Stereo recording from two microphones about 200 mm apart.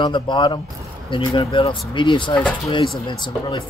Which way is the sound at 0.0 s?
25° left (ahead or behind).